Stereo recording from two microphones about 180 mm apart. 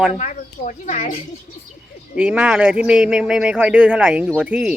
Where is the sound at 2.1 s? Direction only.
5° right (ahead or behind).